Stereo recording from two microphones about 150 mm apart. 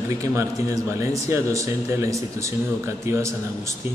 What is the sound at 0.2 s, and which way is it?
A man's voice, 20° right (ahead or behind).